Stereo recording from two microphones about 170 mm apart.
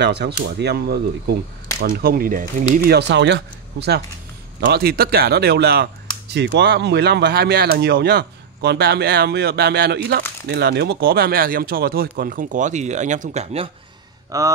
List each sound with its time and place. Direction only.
0.0 s speech: 80° right; by 2.4 s 55° right (ahead or behind)
2.9 s speech: 85° right
4.6 s speech: 70° right (ahead or behind)
6.3 s speech: 90° right; by 13.7 s 40° right (ahead or behind)
14.3 s speech: 20° right (ahead or behind)